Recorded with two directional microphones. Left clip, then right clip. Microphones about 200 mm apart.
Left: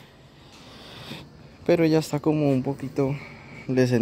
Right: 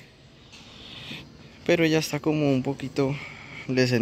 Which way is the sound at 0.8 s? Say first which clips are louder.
Right 1 dB; 25° left (ahead or behind).